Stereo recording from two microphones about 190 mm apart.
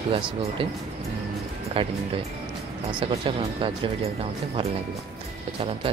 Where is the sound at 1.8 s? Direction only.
30° right (ahead or behind).